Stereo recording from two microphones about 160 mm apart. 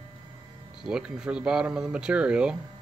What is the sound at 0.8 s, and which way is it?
Speech, 5° right (ahead or behind).